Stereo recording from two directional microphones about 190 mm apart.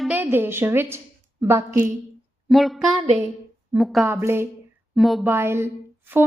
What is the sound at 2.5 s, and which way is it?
Speech, centre (ahead or behind).